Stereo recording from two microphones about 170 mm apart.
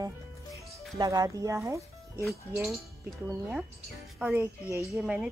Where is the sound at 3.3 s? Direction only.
10° right (ahead or behind).